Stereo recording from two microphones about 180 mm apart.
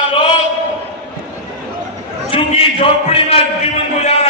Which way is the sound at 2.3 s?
30° left (ahead or behind).